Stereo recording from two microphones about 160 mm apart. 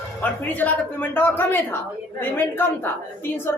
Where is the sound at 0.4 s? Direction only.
10° left (ahead or behind).